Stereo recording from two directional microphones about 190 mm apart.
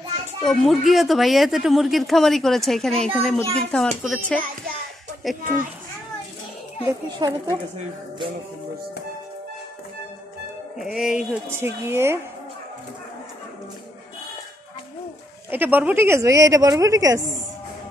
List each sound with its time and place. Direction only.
0.4 s speech: centre (ahead or behind)
6.9 s speech: 15° right (ahead or behind)
10.8 s a woman's voice: centre (ahead or behind)
15.5 s a woman's voice: 10° right (ahead or behind)